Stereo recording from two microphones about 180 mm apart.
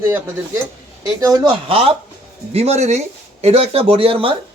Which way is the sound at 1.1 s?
20° right (ahead or behind).